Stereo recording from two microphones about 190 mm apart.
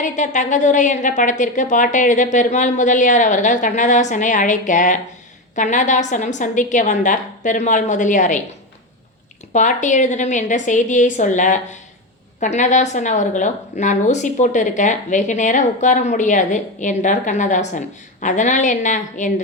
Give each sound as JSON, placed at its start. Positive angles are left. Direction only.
{"t": 0.0, "sound": "a woman's voice", "side_deg": 40}
{"t": 9.5, "sound": "a woman's voice", "side_deg": 40}